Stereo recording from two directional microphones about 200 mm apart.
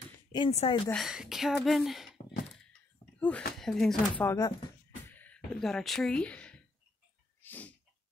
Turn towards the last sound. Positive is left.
turn(degrees=10)  # may be behind; listen again after turning